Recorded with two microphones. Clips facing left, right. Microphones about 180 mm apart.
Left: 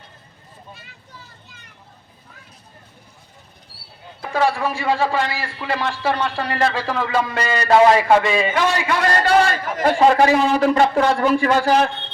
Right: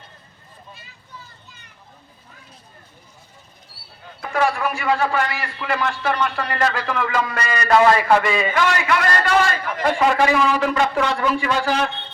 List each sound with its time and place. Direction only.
4.2 s a man's voice: 30° left (ahead or behind)